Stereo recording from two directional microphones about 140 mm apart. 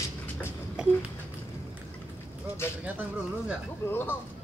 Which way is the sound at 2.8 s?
10° right (ahead or behind).